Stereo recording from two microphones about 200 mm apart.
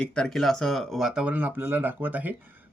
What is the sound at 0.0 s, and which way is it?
Speech, 5° left (ahead or behind).